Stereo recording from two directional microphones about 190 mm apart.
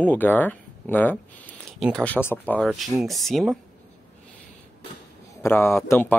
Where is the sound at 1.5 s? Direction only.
Centre (ahead or behind).